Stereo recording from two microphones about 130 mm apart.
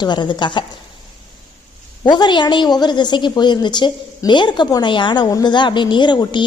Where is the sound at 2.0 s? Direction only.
35° left (ahead or behind).